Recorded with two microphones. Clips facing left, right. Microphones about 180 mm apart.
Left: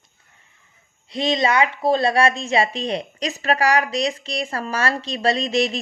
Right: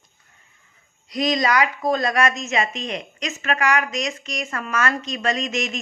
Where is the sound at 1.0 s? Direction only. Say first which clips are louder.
Left 1 dB; 25° left (ahead or behind).